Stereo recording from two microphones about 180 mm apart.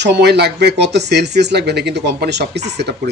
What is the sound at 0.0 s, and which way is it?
Speech, 70° right (ahead or behind).